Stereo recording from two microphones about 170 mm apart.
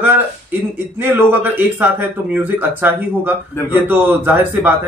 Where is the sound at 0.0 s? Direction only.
10° right (ahead or behind).